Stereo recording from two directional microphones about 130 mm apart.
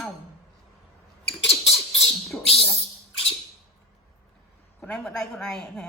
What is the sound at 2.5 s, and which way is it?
Speech, centre (ahead or behind).